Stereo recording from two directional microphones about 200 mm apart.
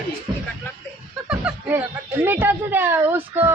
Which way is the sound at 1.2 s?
5° right (ahead or behind).